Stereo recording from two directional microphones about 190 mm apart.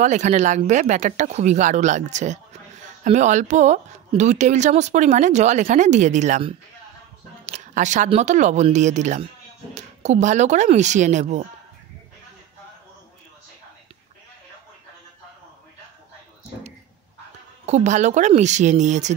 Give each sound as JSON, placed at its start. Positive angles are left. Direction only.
{"t": 0.0, "sound": "speech", "side_deg": -40}
{"t": 17.6, "sound": "speech", "side_deg": -40}